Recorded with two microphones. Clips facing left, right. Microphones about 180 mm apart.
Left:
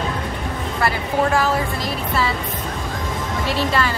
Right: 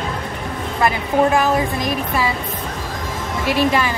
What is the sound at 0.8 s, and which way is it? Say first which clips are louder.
Speech: right 4 dB; 20° right (ahead or behind).